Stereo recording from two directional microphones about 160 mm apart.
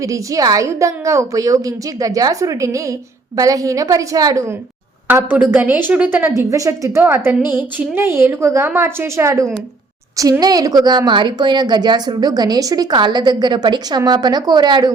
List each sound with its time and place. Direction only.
0.0 s a woman's voice: 20° right (ahead or behind)